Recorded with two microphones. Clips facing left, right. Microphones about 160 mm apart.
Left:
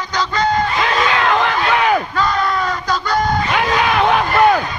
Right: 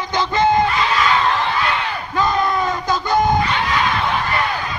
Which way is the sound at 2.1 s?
20° right (ahead or behind).